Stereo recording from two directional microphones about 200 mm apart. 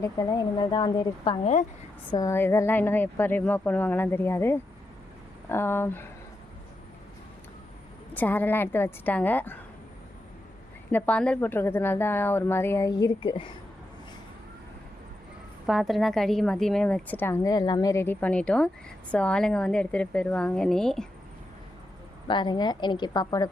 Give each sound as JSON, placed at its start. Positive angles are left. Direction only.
{"t": 0.0, "sound": "speech", "side_deg": 20}
{"t": 2.0, "sound": "a woman's voice", "side_deg": 20}
{"t": 8.1, "sound": "a woman's voice", "side_deg": 10}
{"t": 10.9, "sound": "a woman's voice", "side_deg": 5}
{"t": 15.6, "sound": "a woman's voice", "side_deg": 0}
{"t": 22.3, "sound": "speech", "side_deg": 25}